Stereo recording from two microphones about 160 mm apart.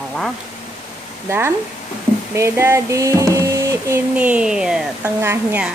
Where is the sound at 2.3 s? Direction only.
15° right (ahead or behind).